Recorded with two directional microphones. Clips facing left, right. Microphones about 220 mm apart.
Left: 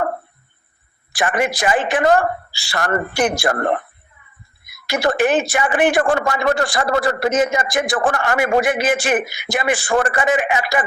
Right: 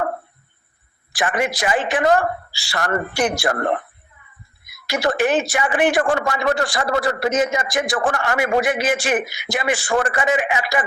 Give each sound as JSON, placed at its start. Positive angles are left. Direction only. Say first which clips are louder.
{"t": 1.1, "sound": "speech", "louder": "left 2 dB", "side_deg": 55}
{"t": 4.7, "sound": "speech", "louder": "left 2 dB", "side_deg": 50}